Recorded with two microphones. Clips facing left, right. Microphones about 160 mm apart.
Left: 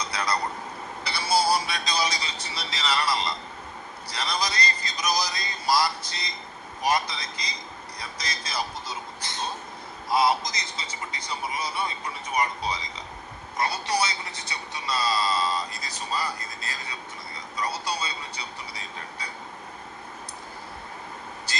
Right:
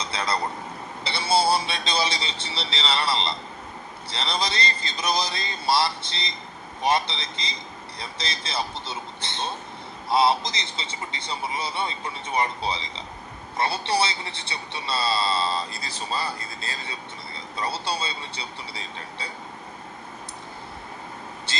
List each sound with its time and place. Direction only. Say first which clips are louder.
0.0 s a man's voice: right 1 dB; 25° right (ahead or behind)
21.5 s speech: right 1 dB; 25° right (ahead or behind)